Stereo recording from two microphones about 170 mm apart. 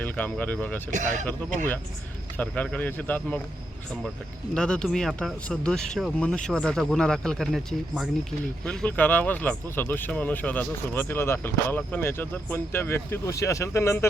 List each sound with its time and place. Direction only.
0.0 s speech: 10° left (ahead or behind)
0.9 s speech: 45° right (ahead or behind)
2.4 s speech: 10° left (ahead or behind)
4.5 s speech: 5° left (ahead or behind)